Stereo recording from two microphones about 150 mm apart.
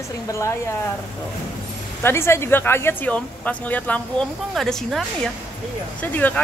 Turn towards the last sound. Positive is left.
turn(degrees=10)  # may be behind; listen again after turning